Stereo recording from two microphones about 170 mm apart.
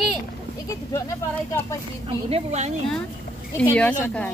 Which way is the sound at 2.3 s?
40° right (ahead or behind).